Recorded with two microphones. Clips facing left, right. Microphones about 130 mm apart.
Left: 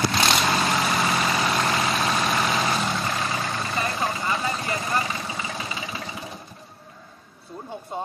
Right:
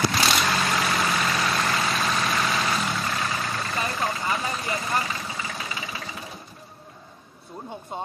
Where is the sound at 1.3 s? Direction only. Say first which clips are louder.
Left 2 dB; 20° left (ahead or behind).